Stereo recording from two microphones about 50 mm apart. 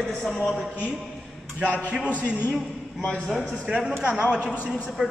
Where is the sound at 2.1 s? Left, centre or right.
Left.